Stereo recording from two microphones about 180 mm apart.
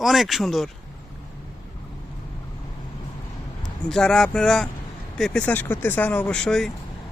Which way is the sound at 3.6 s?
5° left (ahead or behind).